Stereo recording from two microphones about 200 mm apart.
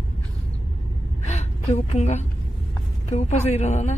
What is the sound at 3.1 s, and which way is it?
Speech, 35° left (ahead or behind).